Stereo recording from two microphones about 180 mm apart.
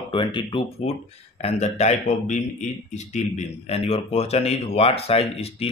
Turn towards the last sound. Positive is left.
turn(degrees=35)  # may be behind; listen again after turning